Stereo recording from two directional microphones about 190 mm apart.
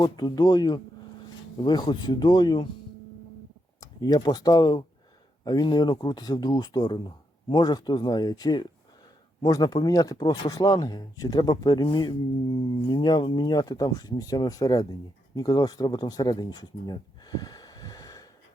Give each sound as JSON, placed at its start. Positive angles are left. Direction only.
{"t": 0.0, "sound": "speech", "side_deg": 20}
{"t": 3.8, "sound": "speech", "side_deg": 20}